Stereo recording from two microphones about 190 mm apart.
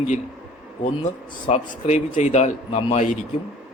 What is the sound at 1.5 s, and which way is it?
A man's voice, 35° left (ahead or behind).